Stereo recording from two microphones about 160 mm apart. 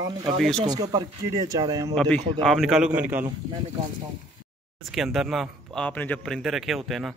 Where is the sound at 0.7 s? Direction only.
25° right (ahead or behind).